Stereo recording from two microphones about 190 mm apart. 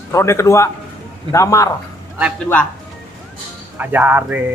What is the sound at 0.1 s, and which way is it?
A man's voice, 15° left (ahead or behind).